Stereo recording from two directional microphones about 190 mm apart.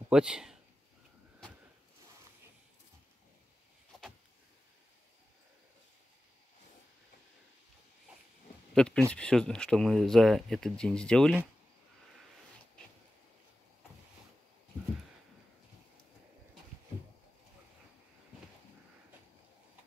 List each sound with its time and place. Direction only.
0.1 s speech: 5° right (ahead or behind)
8.7 s a sound: 5° left (ahead or behind)
9.1 s speech: 5° left (ahead or behind)